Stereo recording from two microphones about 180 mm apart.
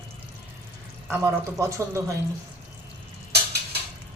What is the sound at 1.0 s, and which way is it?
Speech, 15° right (ahead or behind).